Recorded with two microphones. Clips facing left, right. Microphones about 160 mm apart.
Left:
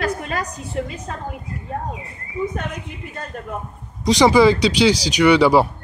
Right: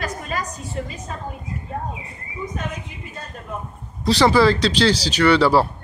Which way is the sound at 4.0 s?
15° left (ahead or behind).